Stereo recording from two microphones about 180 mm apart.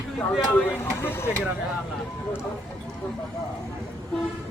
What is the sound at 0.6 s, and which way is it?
Speech, 10° left (ahead or behind).